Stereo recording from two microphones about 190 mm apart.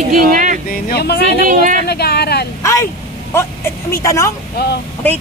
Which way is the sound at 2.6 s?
15° left (ahead or behind).